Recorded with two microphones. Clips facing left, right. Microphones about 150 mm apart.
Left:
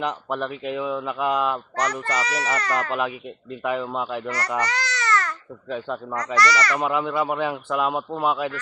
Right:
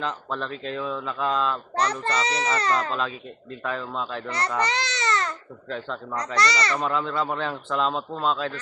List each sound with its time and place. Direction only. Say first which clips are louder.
0.0 s speech: left 3 dB; 15° left (ahead or behind)
1.7 s a child's voice: even; 30° right (ahead or behind)
3.5 s speech: left 5 dB; 15° left (ahead or behind)
4.3 s a child's voice: even; 20° right (ahead or behind)
4.6 s baby cry: even; 20° right (ahead or behind)
5.6 s speech: left 3 dB; 15° left (ahead or behind)
6.1 s a child's voice: left 3 dB; 20° right (ahead or behind)
6.7 s speech: left 3 dB; 15° left (ahead or behind)